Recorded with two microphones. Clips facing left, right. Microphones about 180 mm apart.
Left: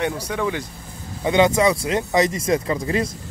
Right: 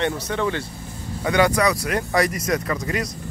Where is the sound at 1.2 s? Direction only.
20° left (ahead or behind).